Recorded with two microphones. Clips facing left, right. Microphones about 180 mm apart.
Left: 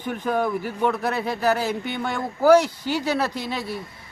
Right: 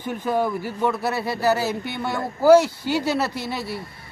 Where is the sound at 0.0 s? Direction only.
10° right (ahead or behind).